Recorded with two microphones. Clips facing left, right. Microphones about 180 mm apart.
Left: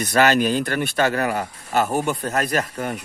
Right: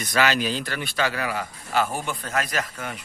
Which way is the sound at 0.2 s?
50° left (ahead or behind).